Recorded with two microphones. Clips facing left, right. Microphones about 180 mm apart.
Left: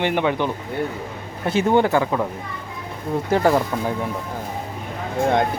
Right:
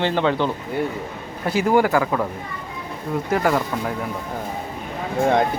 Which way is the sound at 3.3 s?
30° left (ahead or behind).